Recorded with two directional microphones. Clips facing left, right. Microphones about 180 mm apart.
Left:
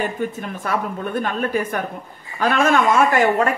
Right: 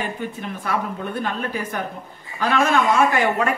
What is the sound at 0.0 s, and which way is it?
A man's voice, 45° left (ahead or behind).